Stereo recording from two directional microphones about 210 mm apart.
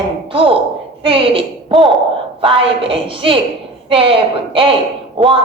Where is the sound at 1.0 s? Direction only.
25° right (ahead or behind).